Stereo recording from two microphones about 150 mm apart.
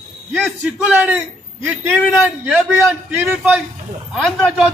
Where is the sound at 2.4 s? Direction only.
10° right (ahead or behind).